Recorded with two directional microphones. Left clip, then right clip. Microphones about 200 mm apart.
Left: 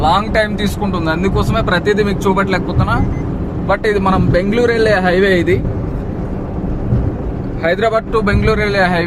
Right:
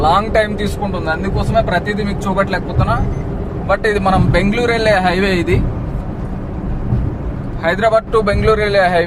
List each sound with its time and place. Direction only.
0.0 s speech: 10° left (ahead or behind)
7.6 s speech: 5° left (ahead or behind)